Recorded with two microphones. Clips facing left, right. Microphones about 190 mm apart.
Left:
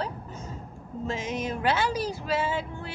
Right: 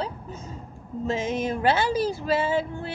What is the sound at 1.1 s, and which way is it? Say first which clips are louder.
Speech: right 5 dB; 30° right (ahead or behind).